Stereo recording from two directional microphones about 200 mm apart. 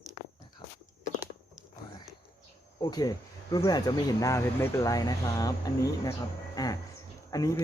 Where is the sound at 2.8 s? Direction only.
20° left (ahead or behind).